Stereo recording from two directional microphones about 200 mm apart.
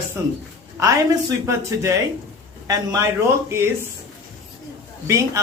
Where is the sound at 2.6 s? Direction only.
15° right (ahead or behind).